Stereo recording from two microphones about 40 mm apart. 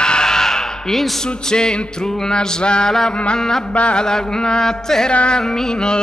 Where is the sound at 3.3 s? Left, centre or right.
Centre.